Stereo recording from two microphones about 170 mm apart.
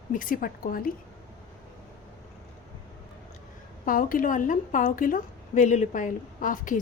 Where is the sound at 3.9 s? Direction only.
55° left (ahead or behind).